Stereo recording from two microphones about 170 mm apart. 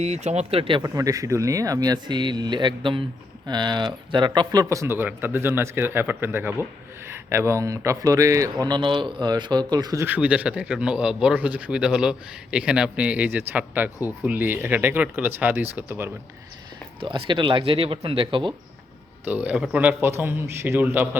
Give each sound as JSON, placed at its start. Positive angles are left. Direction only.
{"t": 0.0, "sound": "speech", "side_deg": -40}
{"t": 0.8, "sound": "speech", "side_deg": -20}
{"t": 4.7, "sound": "speech", "side_deg": -15}
{"t": 17.0, "sound": "speech", "side_deg": -30}
{"t": 19.2, "sound": "speech", "side_deg": -10}